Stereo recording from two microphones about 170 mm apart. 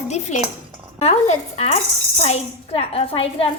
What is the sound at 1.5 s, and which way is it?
A woman's voice, 35° left (ahead or behind).